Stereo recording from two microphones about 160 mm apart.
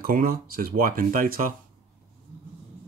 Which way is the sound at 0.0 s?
65° right (ahead or behind).